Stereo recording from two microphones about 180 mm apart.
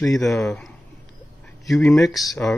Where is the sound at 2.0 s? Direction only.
Centre (ahead or behind).